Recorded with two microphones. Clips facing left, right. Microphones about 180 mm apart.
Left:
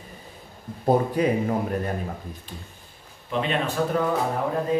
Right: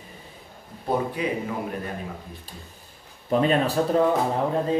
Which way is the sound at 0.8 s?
45° left (ahead or behind).